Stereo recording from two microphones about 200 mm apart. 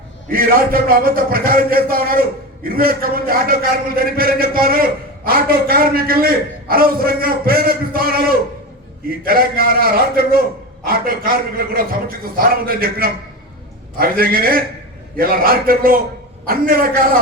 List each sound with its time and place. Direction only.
0.3 s a man's voice: 45° right (ahead or behind)